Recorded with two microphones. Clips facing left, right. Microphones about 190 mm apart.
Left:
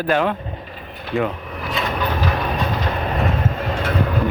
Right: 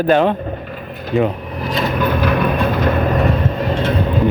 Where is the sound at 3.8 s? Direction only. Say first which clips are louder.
Right 3 dB; 30° right (ahead or behind).